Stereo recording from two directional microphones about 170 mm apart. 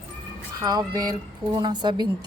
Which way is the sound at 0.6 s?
25° right (ahead or behind).